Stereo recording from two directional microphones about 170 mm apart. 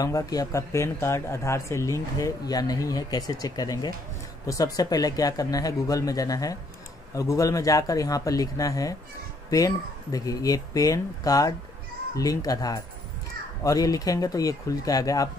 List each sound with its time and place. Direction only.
0.0 s speech: 20° left (ahead or behind)